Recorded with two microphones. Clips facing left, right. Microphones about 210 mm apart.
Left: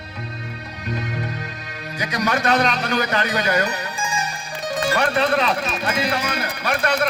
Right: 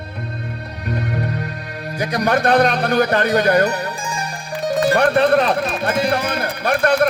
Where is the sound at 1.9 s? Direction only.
55° right (ahead or behind).